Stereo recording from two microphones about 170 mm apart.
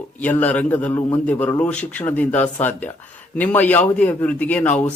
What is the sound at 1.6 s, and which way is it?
Speech, 10° left (ahead or behind).